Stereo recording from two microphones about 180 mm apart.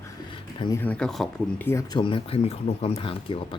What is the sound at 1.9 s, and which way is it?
Speech, 30° left (ahead or behind).